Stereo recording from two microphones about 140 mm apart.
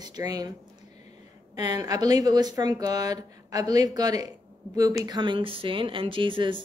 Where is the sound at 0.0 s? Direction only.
30° right (ahead or behind).